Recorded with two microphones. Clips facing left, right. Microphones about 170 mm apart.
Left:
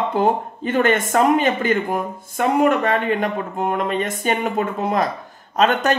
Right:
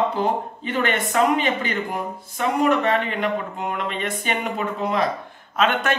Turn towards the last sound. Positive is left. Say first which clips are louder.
# left 4 dB
turn(degrees=40)  # may be behind; listen again after turning